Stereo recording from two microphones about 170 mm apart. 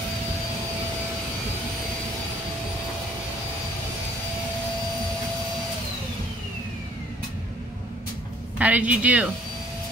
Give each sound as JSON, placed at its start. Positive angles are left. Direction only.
{"t": 8.5, "sound": "speech", "side_deg": -10}